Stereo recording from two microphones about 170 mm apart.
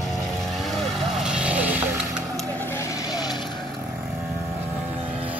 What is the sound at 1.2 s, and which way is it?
Music, 5° right (ahead or behind).